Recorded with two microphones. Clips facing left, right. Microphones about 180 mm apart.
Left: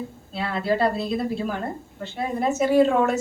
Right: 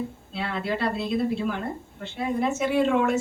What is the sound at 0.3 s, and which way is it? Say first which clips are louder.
Speech: left 5 dB; 40° left (ahead or behind).